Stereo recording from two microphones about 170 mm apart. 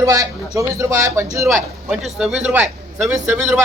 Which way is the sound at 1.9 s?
5° right (ahead or behind).